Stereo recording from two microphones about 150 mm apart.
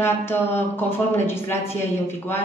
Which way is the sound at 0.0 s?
15° left (ahead or behind).